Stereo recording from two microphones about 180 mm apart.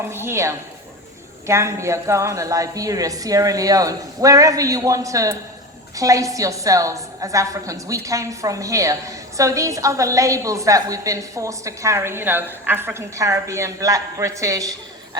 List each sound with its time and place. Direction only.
0.1 s a woman's voice: 15° right (ahead or behind)